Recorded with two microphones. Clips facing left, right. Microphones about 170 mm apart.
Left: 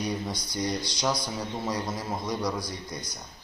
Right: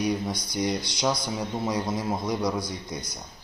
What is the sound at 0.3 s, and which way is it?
A man's voice, 20° right (ahead or behind).